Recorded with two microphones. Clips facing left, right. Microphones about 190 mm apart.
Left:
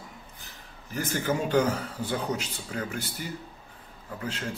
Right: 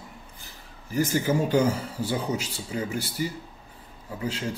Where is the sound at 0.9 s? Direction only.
10° right (ahead or behind).